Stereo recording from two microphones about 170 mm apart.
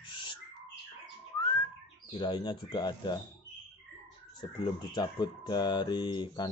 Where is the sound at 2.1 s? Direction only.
25° left (ahead or behind).